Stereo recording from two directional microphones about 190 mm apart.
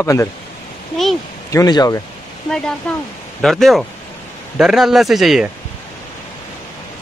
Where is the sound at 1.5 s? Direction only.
20° left (ahead or behind).